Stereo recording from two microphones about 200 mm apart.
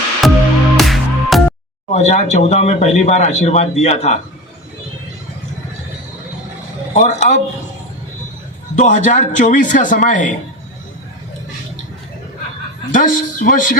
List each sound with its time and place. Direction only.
0.2 s music: centre (ahead or behind)
1.9 s speech: 35° left (ahead or behind)
6.9 s speech: 35° left (ahead or behind)
8.7 s speech: 40° left (ahead or behind)
12.9 s speech: 40° left (ahead or behind)